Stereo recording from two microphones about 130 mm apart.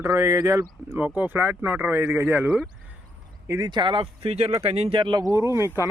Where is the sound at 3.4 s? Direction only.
25° right (ahead or behind); by 5.0 s 50° right (ahead or behind).